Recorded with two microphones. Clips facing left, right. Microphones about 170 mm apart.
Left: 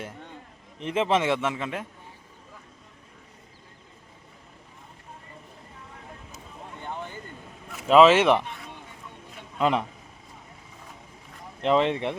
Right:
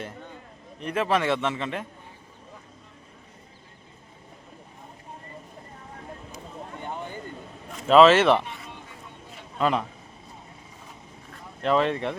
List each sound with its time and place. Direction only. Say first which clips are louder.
0.8 s a man's voice: left 1 dB; 20° left (ahead or behind)
7.9 s a man's voice: right 1 dB; 10° left (ahead or behind)
9.6 s a man's voice: even; 20° left (ahead or behind)
11.6 s speech: left 1 dB; 20° left (ahead or behind)